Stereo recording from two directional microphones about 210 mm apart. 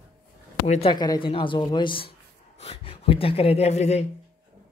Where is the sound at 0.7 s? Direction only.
25° left (ahead or behind).